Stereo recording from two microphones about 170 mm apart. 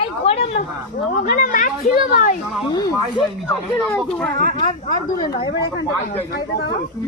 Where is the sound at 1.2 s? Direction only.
50° left (ahead or behind).